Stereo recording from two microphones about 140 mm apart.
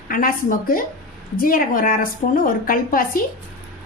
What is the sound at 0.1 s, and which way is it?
A woman's voice, 85° left.